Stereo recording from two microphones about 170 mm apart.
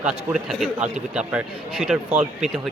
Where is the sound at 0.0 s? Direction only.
5° right (ahead or behind).